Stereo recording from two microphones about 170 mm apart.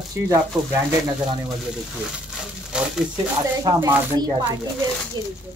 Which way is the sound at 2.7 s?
5° right (ahead or behind).